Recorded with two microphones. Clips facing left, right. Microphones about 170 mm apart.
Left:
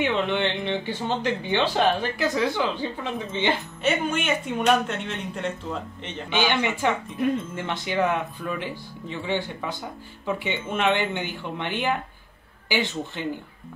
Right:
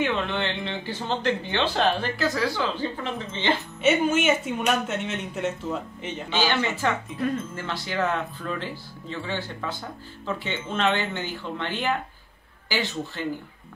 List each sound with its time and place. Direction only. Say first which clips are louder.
0.0 s speech: left 2 dB; 20° left (ahead or behind)
3.8 s a man's voice: right 4 dB; 5° right (ahead or behind)
6.3 s a man's voice: left 1 dB; 15° left (ahead or behind)